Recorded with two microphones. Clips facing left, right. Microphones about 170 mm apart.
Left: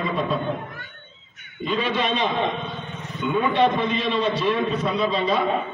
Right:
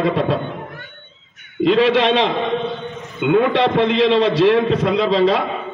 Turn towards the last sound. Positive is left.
turn(degrees=-90)